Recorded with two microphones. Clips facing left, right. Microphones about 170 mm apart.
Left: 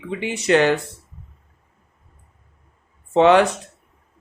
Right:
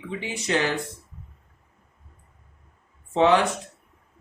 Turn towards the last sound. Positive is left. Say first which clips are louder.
# left 5 dB
turn(degrees=65)  # may be behind; listen again after turning